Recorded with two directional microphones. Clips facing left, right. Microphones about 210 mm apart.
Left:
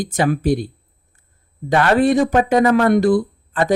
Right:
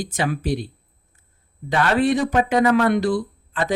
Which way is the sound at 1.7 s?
45° left (ahead or behind).